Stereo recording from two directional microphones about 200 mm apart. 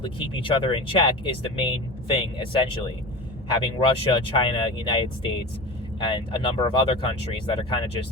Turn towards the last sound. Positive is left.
turn(degrees=25)  # may be behind; listen again after turning